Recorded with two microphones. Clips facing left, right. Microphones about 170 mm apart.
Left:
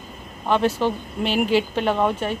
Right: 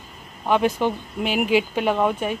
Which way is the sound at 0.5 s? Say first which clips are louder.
Even; 10° right (ahead or behind).